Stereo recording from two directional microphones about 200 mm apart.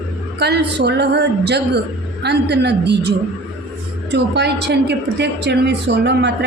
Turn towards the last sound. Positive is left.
turn(degrees=-60)  # may be behind; listen again after turning